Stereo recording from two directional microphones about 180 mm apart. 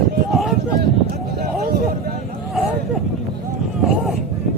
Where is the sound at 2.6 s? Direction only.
Centre (ahead or behind).